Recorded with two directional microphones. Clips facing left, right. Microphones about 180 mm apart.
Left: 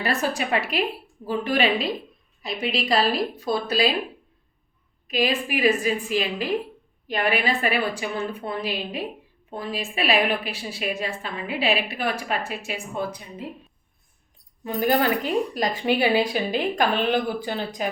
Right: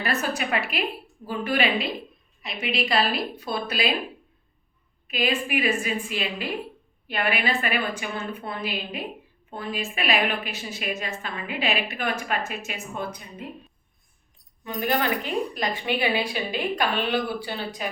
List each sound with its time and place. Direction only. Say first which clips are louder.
0.0 s a woman's voice: left 2 dB; 35° left (ahead or behind)
2.5 s a woman's voice: left 3 dB; 5° right (ahead or behind)
2.7 s a woman's voice: left 2 dB; 35° left (ahead or behind)
5.0 s a woman's voice: left 2 dB; 35° left (ahead or behind)
14.6 s a woman's voice: left 4 dB; 40° left (ahead or behind)